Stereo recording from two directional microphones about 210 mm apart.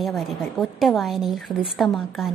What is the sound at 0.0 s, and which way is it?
A woman's voice, centre (ahead or behind).